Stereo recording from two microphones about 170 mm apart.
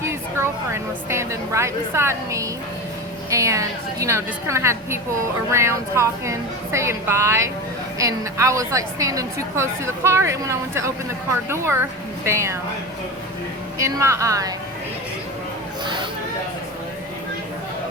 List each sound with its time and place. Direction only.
0.0 s a woman's voice: 15° right (ahead or behind)
13.7 s a woman's voice: 20° right (ahead or behind)
15.8 s chatter: 25° right (ahead or behind)